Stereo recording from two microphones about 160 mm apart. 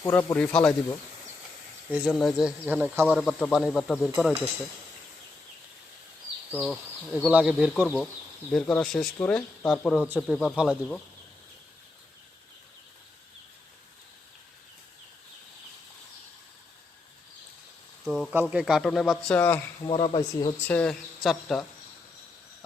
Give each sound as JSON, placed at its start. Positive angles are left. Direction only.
{"t": 0.0, "sound": "speech", "side_deg": 15}
{"t": 1.9, "sound": "speech", "side_deg": -5}
{"t": 6.5, "sound": "speech", "side_deg": -5}
{"t": 9.9, "sound": "speech", "side_deg": -5}
{"t": 18.0, "sound": "speech", "side_deg": -5}
{"t": 19.9, "sound": "speech", "side_deg": 30}
{"t": 20.7, "sound": "speech", "side_deg": 5}